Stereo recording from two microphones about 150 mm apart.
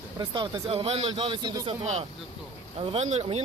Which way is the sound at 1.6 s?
45° right (ahead or behind).